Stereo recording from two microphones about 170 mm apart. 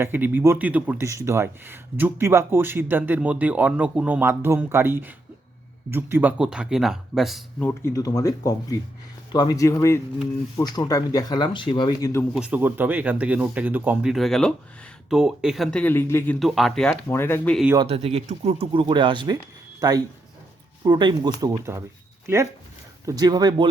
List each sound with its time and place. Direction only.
0.0 s speech: 10° right (ahead or behind)
7.6 s speech: 15° left (ahead or behind)
12.3 s speech: 5° right (ahead or behind)
17.1 s speech: 15° left (ahead or behind)
17.8 s speech: 35° right (ahead or behind); by 21.8 s 20° right (ahead or behind)
23.0 s speech: 25° right (ahead or behind)